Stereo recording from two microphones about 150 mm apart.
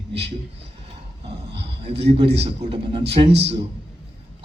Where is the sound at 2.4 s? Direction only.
40° right (ahead or behind).